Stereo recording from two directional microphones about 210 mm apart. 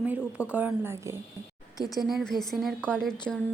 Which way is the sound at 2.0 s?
Centre (ahead or behind).